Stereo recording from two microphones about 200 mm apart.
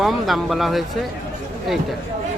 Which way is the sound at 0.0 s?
Centre (ahead or behind).